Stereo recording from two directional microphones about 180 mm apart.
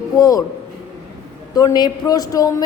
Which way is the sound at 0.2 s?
20° left (ahead or behind).